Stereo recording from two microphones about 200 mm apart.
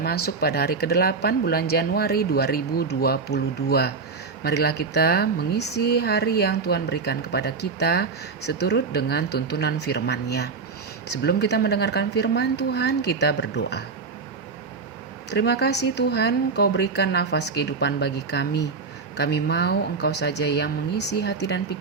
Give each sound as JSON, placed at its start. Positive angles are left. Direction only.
{"t": 0.0, "sound": "speech", "side_deg": 50}
{"t": 15.3, "sound": "speech", "side_deg": 55}